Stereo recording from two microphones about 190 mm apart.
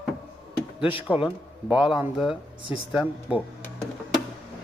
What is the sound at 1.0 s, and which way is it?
Speech, 5° right (ahead or behind).